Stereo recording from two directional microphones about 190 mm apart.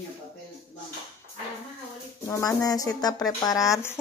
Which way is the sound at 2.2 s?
15° left (ahead or behind).